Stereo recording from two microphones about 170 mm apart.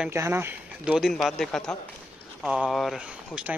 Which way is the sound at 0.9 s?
Centre (ahead or behind).